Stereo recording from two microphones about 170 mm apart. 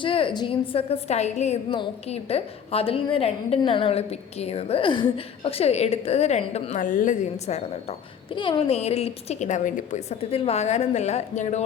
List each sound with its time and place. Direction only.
0.0 s a woman's voice: 30° left (ahead or behind)